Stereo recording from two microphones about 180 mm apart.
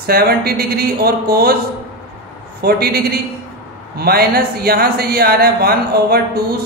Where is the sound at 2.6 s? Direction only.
60° right (ahead or behind).